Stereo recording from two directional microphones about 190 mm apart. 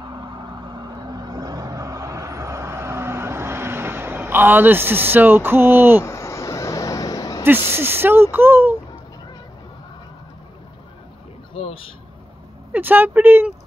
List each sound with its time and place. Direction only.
0.7 s vehicle: 20° right (ahead or behind)
6.0 s vehicle: 15° left (ahead or behind)
7.7 s speech: 10° right (ahead or behind)
11.5 s speech: 30° left (ahead or behind)
12.7 s speech: 10° right (ahead or behind)